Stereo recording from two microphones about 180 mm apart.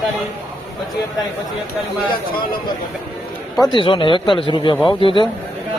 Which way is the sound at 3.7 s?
25° left (ahead or behind).